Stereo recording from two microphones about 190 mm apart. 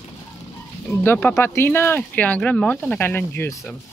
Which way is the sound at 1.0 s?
10° left (ahead or behind).